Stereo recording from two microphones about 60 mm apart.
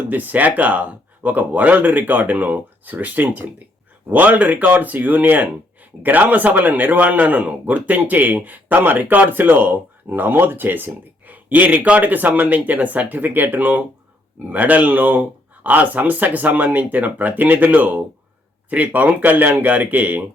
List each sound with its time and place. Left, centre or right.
0.1 s a man's voice: right